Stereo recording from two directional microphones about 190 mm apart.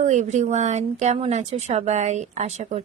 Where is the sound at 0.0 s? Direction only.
40° right (ahead or behind).